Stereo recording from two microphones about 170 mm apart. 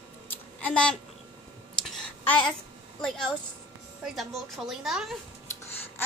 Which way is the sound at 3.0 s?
5° left (ahead or behind).